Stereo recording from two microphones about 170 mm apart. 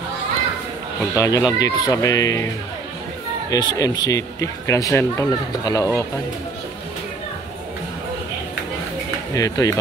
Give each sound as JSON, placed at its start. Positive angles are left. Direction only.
{"t": 1.1, "sound": "speech", "side_deg": 20}
{"t": 3.4, "sound": "speech", "side_deg": 25}
{"t": 9.3, "sound": "speech", "side_deg": 20}